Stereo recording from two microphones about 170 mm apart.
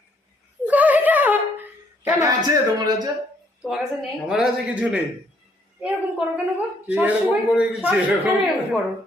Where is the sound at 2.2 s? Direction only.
20° right (ahead or behind).